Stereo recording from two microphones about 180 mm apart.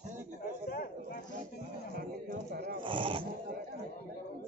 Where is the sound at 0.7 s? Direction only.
60° left (ahead or behind).